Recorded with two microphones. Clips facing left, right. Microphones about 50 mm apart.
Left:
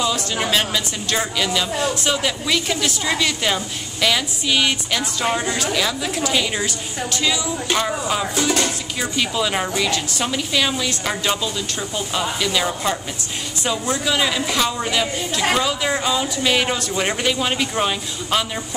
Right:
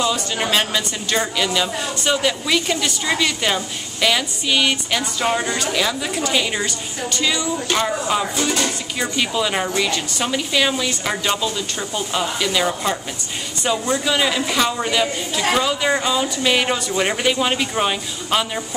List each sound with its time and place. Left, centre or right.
0.0 s speech: centre